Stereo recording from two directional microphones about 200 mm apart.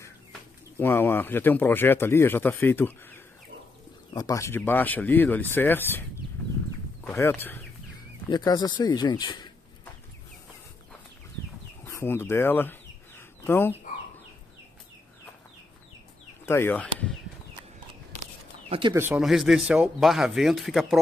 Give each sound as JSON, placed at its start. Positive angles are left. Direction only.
{"t": 0.3, "sound": "speech", "side_deg": 10}
{"t": 7.1, "sound": "speech", "side_deg": 10}
{"t": 11.8, "sound": "chicken", "side_deg": 10}
{"t": 16.4, "sound": "speech", "side_deg": 10}
{"t": 18.7, "sound": "speech", "side_deg": -25}
{"t": 18.9, "sound": "speech", "side_deg": -10}